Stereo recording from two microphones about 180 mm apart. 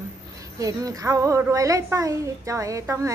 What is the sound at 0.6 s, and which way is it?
A woman's voice, 20° right (ahead or behind).